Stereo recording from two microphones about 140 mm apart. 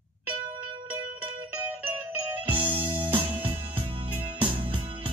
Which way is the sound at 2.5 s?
40° right (ahead or behind).